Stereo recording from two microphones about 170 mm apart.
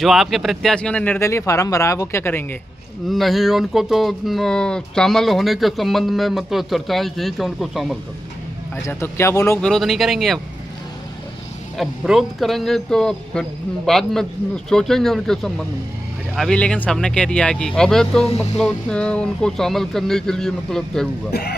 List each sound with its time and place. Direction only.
0.0 s speech: centre (ahead or behind)
1.2 s speech: 15° left (ahead or behind)
3.1 s speech: centre (ahead or behind)
8.8 s speech: 15° left (ahead or behind)
9.6 s speech: centre (ahead or behind)
11.7 s speech: centre (ahead or behind)
21.3 s speech: 65° left (ahead or behind)